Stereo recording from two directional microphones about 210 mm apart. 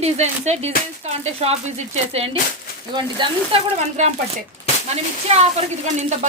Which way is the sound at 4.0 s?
35° right (ahead or behind).